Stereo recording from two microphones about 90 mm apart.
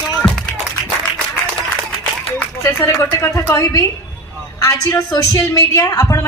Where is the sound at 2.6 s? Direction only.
30° left (ahead or behind).